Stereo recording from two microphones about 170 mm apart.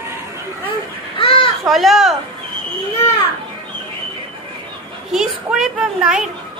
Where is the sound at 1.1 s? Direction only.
30° left (ahead or behind).